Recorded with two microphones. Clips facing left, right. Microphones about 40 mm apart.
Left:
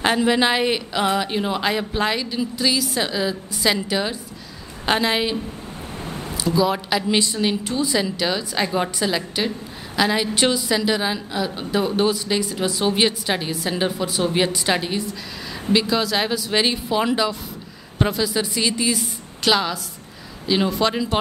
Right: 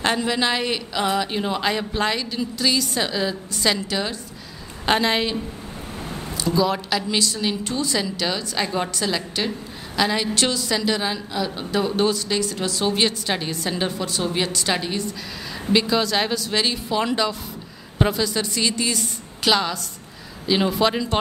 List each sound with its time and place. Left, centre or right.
0.0 s a man's voice: centre
6.0 s a sound: centre
6.4 s a woman's voice: centre
7.6 s a woman's voice: centre
16.5 s a woman's voice: centre